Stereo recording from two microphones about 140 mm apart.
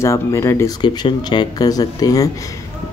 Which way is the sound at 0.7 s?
30° left (ahead or behind).